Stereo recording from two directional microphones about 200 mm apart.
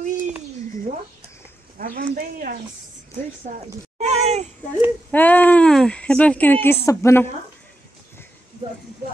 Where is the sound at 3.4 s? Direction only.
35° right (ahead or behind).